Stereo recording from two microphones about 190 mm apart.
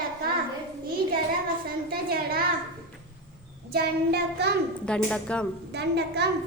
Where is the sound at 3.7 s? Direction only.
55° right (ahead or behind).